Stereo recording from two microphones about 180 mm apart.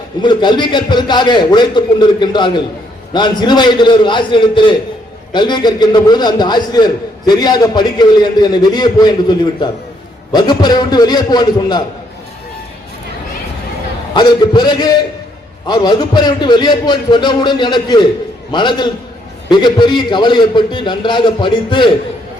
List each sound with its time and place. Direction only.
0.2 s a man's voice: 25° left (ahead or behind)
14.1 s a man's voice: 25° left (ahead or behind)